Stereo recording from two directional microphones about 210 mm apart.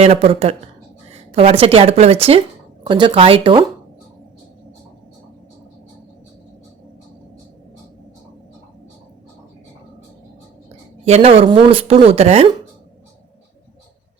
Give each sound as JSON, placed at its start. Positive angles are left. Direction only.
{"t": 0.0, "sound": "speech", "side_deg": -30}
{"t": 11.0, "sound": "speech", "side_deg": -30}